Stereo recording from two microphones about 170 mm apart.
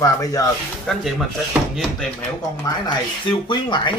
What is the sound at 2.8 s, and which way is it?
Speech, 25° left (ahead or behind).